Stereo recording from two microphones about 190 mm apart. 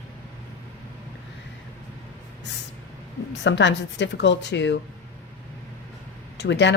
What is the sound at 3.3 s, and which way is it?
A woman's voice, 70° left (ahead or behind).